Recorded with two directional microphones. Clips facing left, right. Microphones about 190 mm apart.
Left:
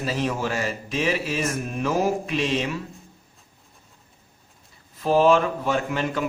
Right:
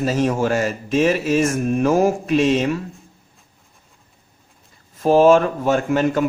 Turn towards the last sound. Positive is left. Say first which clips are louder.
# right 7 dB
turn(degrees=-45)  # may be behind; listen again after turning